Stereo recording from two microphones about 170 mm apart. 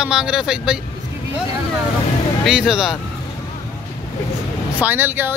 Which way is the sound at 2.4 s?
5° right (ahead or behind).